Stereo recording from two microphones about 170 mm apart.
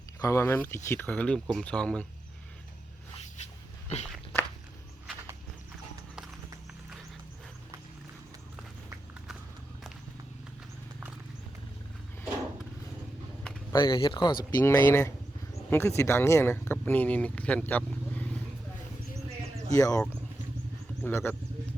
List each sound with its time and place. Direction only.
0.2 s speech: 15° left (ahead or behind)
3.3 s a sound: 40° left (ahead or behind)
4.1 s walk: 5° left (ahead or behind)
13.7 s speech: 25° left (ahead or behind)
14.5 s speech: 15° left (ahead or behind)
19.7 s speech: 20° left (ahead or behind)